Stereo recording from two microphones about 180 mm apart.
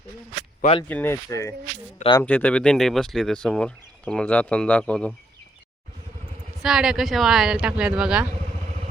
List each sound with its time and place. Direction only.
0.6 s speech: 30° left (ahead or behind)
0.9 s speech: 10° left (ahead or behind)
6.6 s speech: 5° right (ahead or behind)